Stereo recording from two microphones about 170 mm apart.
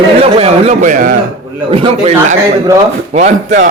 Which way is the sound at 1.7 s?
35° right (ahead or behind).